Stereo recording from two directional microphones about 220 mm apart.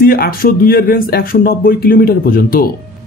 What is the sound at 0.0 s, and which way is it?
Speech, 40° left (ahead or behind).